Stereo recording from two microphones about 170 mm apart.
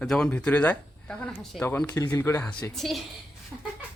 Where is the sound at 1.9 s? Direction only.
20° left (ahead or behind).